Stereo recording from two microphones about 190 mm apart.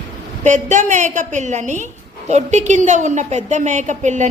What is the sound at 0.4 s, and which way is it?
A woman's voice, 40° right (ahead or behind).